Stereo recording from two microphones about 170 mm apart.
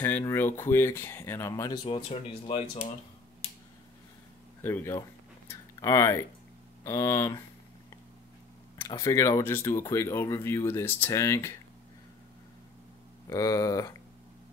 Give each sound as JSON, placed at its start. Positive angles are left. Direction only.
{"t": 0.0, "sound": "speech", "side_deg": 15}
{"t": 1.9, "sound": "speech", "side_deg": 30}
{"t": 4.6, "sound": "speech", "side_deg": 10}
{"t": 8.8, "sound": "speech", "side_deg": 20}
{"t": 13.3, "sound": "speech", "side_deg": 20}